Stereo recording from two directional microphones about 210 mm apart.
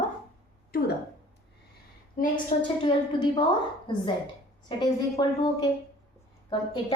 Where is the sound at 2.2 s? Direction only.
40° left (ahead or behind).